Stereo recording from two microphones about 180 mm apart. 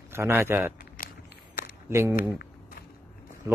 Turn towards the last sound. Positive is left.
turn(degrees=-15)  # may be behind; listen again after turning